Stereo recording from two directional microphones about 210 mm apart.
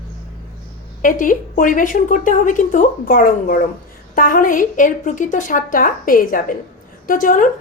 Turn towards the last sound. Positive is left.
turn(degrees=40)  # may be behind; listen again after turning